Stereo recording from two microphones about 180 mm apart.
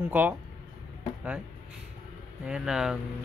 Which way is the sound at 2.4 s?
5° right (ahead or behind).